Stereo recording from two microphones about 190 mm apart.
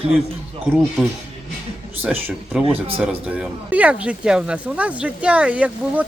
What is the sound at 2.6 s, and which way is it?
Speech, 30° right (ahead or behind).